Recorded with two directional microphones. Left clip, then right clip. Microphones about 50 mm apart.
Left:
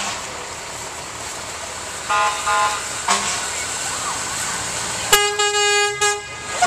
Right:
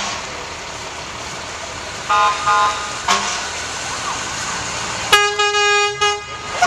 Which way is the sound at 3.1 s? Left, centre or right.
Left.